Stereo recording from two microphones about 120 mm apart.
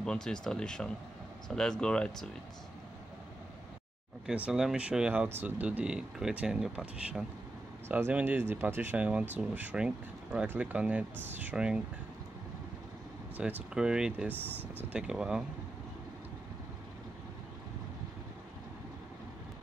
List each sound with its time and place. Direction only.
0.0 s speech: 5° left (ahead or behind)
4.3 s speech: 5° right (ahead or behind)
13.4 s speech: 5° right (ahead or behind)
14.3 s speech: 15° left (ahead or behind)
14.9 s speech: 5° right (ahead or behind)